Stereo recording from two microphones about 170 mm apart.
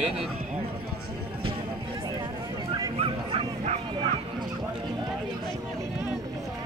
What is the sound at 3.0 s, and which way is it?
Bow-wow, 40° right (ahead or behind).